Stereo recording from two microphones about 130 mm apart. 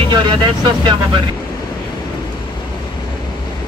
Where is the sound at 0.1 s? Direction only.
35° right (ahead or behind).